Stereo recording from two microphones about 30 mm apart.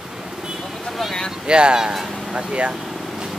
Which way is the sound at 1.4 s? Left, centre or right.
Right.